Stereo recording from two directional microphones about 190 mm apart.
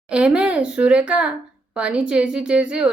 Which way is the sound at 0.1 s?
5° right (ahead or behind).